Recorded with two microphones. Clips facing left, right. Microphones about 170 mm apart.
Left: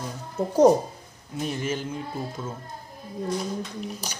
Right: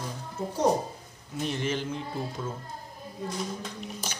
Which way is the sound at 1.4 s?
10° left (ahead or behind).